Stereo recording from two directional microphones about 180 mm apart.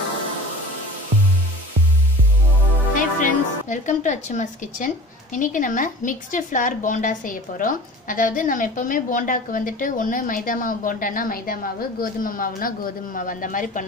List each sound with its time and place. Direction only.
2.9 s a woman's voice: 45° left (ahead or behind)